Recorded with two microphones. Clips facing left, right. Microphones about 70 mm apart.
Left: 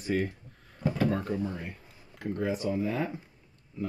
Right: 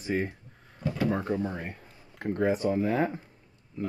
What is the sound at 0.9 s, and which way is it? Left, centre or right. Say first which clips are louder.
Speech: right 2 dB; centre.